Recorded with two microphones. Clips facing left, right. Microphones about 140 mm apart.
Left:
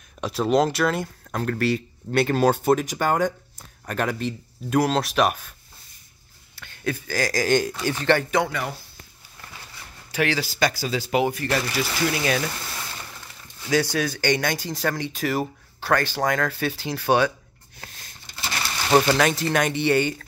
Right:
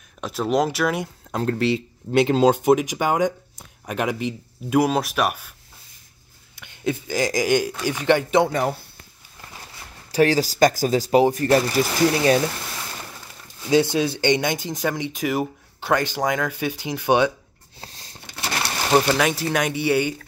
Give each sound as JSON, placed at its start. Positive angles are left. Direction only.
{"t": 0.2, "sound": "speech", "side_deg": 0}
{"t": 1.4, "sound": "speech", "side_deg": -25}
{"t": 6.5, "sound": "speech", "side_deg": -20}
{"t": 10.1, "sound": "speech", "side_deg": -40}
{"t": 13.7, "sound": "speech", "side_deg": -25}
{"t": 17.7, "sound": "a sound", "side_deg": -30}
{"t": 18.9, "sound": "speech", "side_deg": -5}